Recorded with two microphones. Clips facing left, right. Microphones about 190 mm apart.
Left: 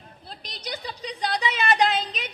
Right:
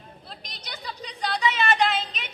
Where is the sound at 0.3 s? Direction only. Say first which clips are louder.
Left 7 dB; 35° left (ahead or behind).